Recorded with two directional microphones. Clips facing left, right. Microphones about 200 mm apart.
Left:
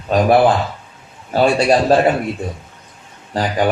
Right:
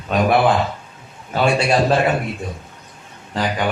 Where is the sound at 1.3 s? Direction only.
35° left (ahead or behind).